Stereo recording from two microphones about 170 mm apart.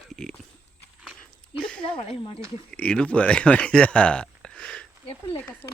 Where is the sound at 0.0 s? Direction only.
Centre (ahead or behind).